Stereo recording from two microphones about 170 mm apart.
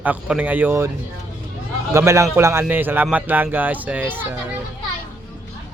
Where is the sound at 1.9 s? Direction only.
15° right (ahead or behind).